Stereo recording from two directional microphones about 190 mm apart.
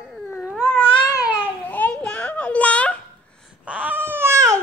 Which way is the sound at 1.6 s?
10° left (ahead or behind).